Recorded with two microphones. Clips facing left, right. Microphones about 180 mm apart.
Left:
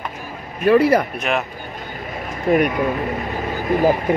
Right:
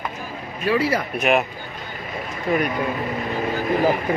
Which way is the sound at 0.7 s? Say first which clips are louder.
Left 7 dB; 55° left (ahead or behind).